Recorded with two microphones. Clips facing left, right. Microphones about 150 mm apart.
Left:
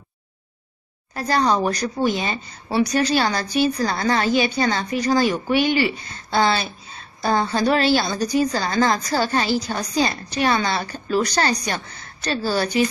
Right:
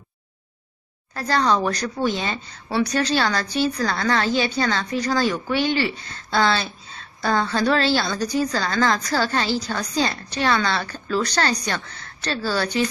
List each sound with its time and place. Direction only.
1.1 s a woman's voice: 15° left (ahead or behind)